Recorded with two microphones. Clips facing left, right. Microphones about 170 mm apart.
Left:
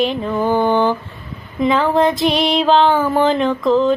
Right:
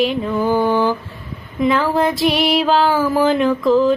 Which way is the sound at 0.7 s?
Centre (ahead or behind).